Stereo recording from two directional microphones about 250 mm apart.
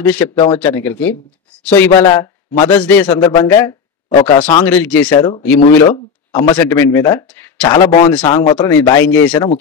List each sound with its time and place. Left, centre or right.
0.0 s speech: centre
0.3 s speech: left
0.6 s speech: centre
4.6 s speech: centre